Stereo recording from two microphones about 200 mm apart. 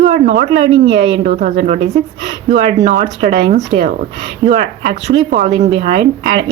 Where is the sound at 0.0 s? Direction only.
35° right (ahead or behind).